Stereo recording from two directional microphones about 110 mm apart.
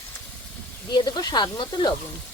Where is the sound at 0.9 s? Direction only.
40° left (ahead or behind).